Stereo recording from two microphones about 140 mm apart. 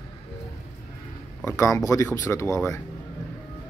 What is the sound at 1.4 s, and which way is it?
Speech, 20° left (ahead or behind).